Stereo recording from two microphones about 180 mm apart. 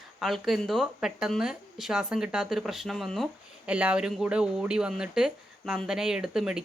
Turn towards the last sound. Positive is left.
turn(degrees=-5)  # may be behind; listen again after turning